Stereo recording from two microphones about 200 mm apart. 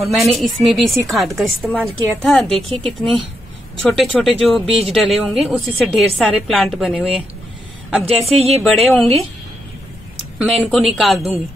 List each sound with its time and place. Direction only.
0.1 s a woman's voice: centre (ahead or behind)
10.4 s a woman's voice: 5° left (ahead or behind)